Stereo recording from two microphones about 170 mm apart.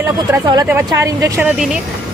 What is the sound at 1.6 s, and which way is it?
Speech, 5° right (ahead or behind).